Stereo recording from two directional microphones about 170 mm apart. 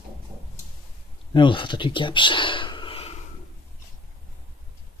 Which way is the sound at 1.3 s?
30° left (ahead or behind).